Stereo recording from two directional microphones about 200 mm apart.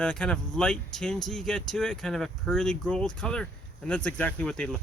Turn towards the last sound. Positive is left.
turn(degrees=5)  # may be behind; listen again after turning